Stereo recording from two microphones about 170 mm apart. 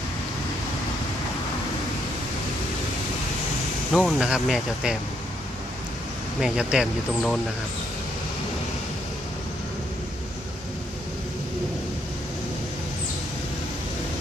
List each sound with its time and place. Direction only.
3.9 s speech: centre (ahead or behind)
6.4 s speech: 5° right (ahead or behind)